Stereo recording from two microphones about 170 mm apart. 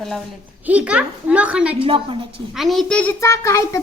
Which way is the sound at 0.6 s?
10° right (ahead or behind).